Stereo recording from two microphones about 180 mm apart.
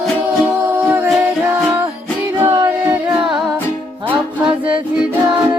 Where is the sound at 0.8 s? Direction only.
10° right (ahead or behind).